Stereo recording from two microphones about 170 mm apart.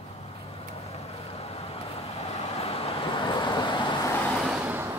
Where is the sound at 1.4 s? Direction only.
35° left (ahead or behind).